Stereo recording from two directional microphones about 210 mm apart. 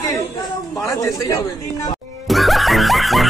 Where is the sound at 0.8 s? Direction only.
15° left (ahead or behind).